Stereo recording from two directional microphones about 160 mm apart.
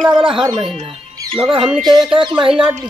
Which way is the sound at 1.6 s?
5° right (ahead or behind).